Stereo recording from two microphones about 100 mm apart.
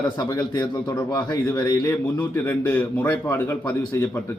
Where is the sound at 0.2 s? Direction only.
45° left (ahead or behind).